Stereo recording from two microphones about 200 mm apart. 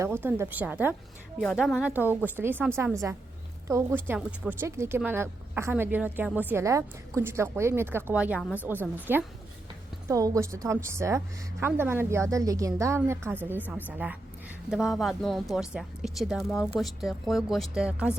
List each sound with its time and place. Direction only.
0.0 s a woman's voice: 10° right (ahead or behind)